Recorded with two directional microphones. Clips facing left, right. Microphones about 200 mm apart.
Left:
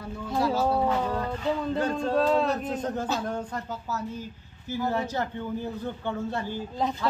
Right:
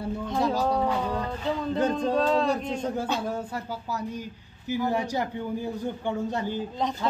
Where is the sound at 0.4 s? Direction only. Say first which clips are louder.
Left 1 dB; 15° right (ahead or behind).